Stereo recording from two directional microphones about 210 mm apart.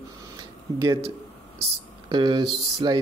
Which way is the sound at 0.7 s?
15° right (ahead or behind).